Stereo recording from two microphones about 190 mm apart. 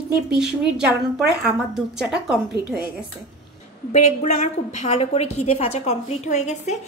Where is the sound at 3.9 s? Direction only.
35° left (ahead or behind).